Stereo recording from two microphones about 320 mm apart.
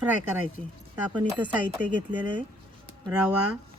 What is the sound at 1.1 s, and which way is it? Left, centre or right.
Speech, centre.